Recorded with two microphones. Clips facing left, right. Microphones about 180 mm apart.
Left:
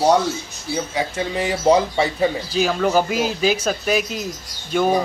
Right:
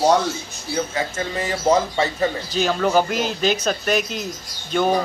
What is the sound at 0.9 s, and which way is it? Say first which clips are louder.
A man's voice: left 2 dB; 15° left (ahead or behind).